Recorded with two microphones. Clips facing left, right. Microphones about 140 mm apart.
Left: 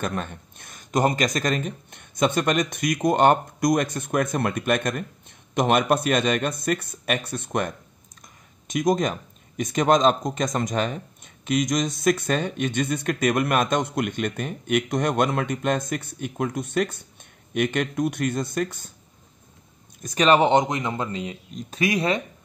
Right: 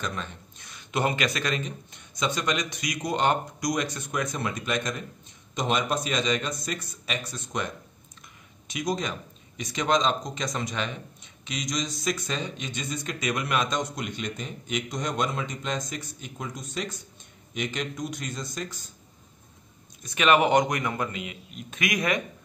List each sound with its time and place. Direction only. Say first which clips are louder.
0.0 s speech: left 5 dB; 55° left (ahead or behind)
20.0 s speech: left 3 dB; 40° left (ahead or behind)